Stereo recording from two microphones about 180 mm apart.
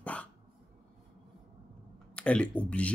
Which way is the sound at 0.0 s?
10° left (ahead or behind).